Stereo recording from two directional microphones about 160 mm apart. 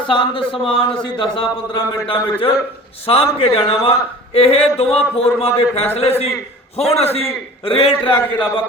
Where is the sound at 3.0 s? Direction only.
40° left (ahead or behind).